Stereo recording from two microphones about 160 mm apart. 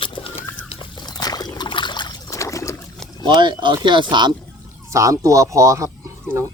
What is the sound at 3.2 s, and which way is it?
Speech, 30° right (ahead or behind).